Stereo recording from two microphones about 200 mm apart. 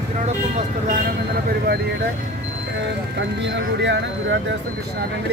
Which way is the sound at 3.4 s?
60° right (ahead or behind).